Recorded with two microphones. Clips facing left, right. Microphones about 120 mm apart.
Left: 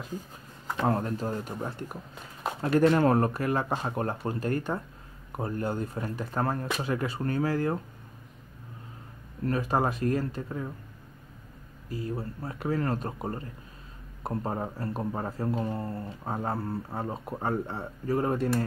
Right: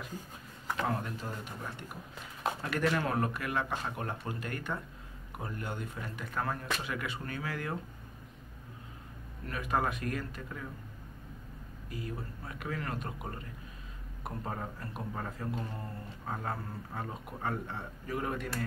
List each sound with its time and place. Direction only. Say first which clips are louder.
0.8 s a man's voice: left 11 dB; 40° left (ahead or behind)
9.5 s a man's voice: left 5 dB; 35° left (ahead or behind)
11.9 s a man's voice: left 7 dB; 35° left (ahead or behind)